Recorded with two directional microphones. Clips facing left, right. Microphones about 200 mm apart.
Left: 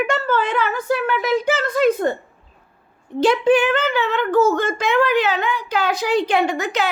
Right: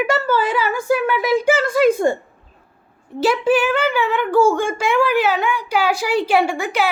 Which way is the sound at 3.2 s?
5° right (ahead or behind).